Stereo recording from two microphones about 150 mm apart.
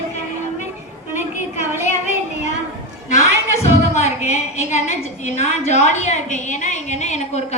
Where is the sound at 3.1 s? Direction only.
45° left (ahead or behind).